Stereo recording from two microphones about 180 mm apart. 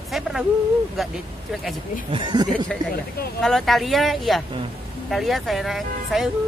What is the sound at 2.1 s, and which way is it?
Speech, 25° right (ahead or behind).